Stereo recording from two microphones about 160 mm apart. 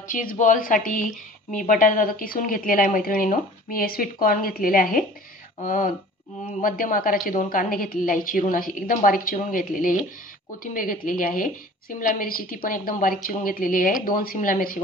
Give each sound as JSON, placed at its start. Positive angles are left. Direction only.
{"t": 0.1, "sound": "speech", "side_deg": 60}